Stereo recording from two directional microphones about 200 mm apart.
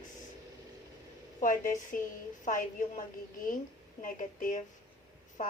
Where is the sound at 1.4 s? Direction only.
40° left (ahead or behind).